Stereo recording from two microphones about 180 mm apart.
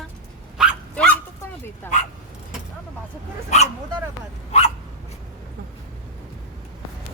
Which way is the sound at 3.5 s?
40° left (ahead or behind).